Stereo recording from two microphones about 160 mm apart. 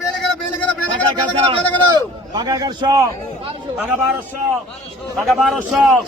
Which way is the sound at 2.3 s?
25° right (ahead or behind).